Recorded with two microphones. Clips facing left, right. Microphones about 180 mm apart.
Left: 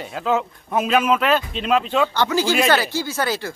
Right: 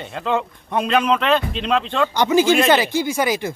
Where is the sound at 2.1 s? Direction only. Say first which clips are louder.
Right 4 dB; 20° right (ahead or behind).